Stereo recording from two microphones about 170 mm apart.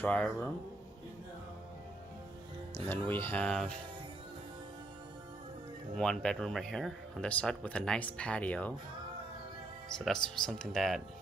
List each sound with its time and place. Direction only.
0.0 s speech: 5° left (ahead or behind)
2.9 s speech: 10° left (ahead or behind)
5.9 s speech: 5° left (ahead or behind)
9.9 s speech: 5° left (ahead or behind)